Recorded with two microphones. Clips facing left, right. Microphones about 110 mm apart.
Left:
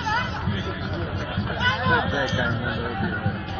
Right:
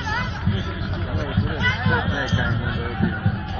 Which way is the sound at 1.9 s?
15° left (ahead or behind).